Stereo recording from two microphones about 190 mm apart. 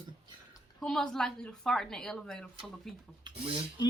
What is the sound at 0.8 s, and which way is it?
A woman's voice, 5° left (ahead or behind).